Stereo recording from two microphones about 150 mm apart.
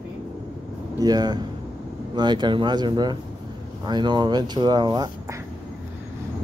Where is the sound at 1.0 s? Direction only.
25° right (ahead or behind).